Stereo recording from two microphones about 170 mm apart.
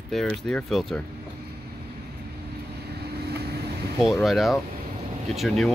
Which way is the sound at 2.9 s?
70° right (ahead or behind).